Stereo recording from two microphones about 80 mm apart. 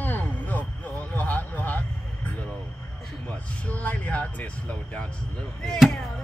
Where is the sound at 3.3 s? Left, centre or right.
Centre.